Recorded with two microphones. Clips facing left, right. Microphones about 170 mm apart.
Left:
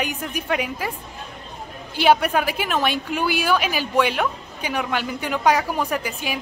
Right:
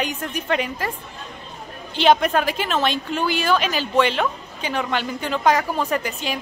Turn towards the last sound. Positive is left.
turn(degrees=10)  # may be behind; listen again after turning